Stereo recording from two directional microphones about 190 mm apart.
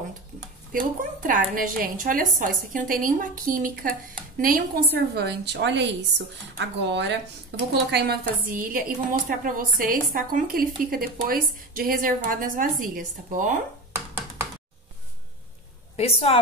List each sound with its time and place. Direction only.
0.7 s a woman's voice: 45° right (ahead or behind); by 7.2 s 70° right (ahead or behind)
7.7 s a woman's voice: 55° right (ahead or behind)
13.9 s a sound: 10° right (ahead or behind)
16.0 s a woman's voice: 30° left (ahead or behind)